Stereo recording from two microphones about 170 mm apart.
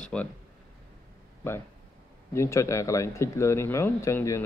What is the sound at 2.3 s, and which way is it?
Speech, 15° left (ahead or behind).